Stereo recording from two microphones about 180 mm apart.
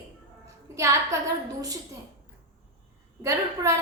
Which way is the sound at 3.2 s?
15° right (ahead or behind).